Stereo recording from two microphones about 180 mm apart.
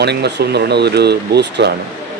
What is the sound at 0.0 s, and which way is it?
Speech, 65° right (ahead or behind).